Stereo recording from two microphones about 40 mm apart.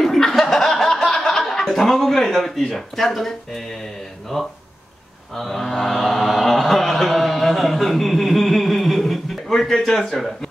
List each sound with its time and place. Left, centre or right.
0.0 s chuckle: centre
2.7 s speech: centre
5.3 s mantra: centre
9.7 s speech: centre